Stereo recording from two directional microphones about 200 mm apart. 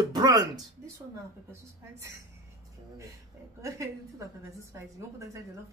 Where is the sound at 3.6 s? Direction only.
15° right (ahead or behind).